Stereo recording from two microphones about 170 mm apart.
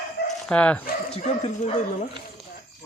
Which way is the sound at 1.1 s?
40° left (ahead or behind).